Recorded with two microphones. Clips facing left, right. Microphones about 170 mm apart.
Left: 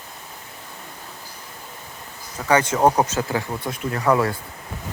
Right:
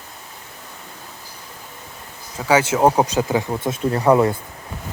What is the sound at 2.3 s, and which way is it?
Speech, 5° right (ahead or behind).